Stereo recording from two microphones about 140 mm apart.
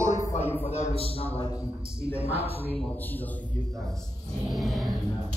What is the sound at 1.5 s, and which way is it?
Speech, 25° left (ahead or behind).